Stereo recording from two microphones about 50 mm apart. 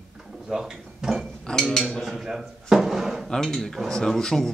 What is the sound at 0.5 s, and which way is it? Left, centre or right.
Drawer open or close, centre.